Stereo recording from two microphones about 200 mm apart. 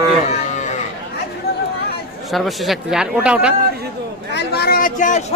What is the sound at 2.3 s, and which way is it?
Speech, centre (ahead or behind).